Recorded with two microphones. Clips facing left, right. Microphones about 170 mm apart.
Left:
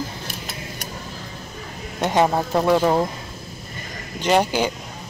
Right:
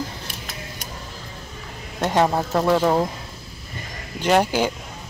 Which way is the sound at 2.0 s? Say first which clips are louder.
Left 1 dB; centre (ahead or behind).